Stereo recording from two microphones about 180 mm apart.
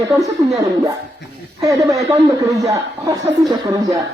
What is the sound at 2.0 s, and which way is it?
Speech, 20° right (ahead or behind).